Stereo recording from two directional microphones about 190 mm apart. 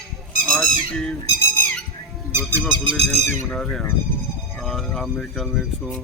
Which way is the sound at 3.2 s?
40° right (ahead or behind).